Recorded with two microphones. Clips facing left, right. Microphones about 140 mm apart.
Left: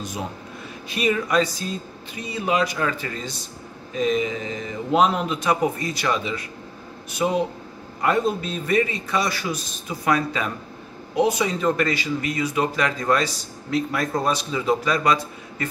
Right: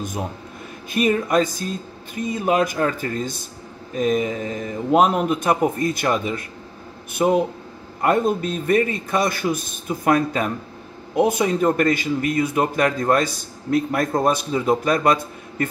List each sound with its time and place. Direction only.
0.8 s a man's voice: 50° right (ahead or behind)